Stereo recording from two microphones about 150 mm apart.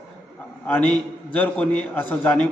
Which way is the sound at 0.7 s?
10° left (ahead or behind).